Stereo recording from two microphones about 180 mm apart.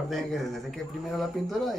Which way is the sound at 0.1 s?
Centre (ahead or behind).